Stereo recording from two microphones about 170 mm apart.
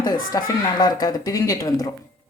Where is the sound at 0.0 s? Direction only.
20° left (ahead or behind).